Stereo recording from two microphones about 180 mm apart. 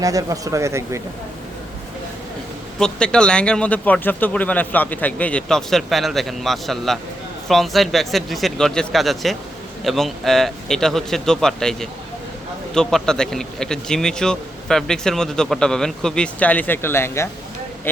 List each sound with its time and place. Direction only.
0.0 s speech: 20° right (ahead or behind)
2.7 s speech: 5° left (ahead or behind)